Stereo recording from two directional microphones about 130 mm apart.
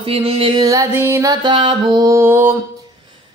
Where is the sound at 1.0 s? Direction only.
20° right (ahead or behind).